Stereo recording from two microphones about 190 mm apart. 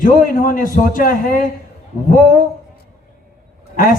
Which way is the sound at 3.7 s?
45° left (ahead or behind).